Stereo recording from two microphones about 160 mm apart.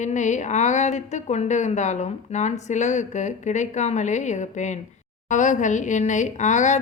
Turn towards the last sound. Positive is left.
turn(degrees=50)  # may be behind; listen again after turning